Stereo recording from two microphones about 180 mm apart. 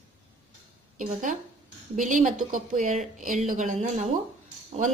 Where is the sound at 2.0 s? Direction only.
45° right (ahead or behind).